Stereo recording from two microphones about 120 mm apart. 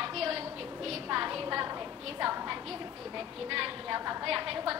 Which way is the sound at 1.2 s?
20° right (ahead or behind).